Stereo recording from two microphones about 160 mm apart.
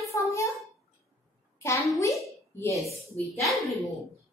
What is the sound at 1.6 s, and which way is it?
Speech, 20° left (ahead or behind).